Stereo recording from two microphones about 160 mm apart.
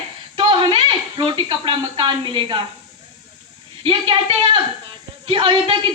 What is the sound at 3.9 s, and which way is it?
A woman's voice, 35° right (ahead or behind).